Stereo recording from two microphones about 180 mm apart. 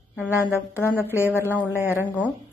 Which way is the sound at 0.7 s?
15° left (ahead or behind).